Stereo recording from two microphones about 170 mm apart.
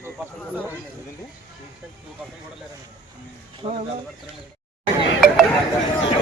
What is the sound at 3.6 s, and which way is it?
Speech, 35° right (ahead or behind).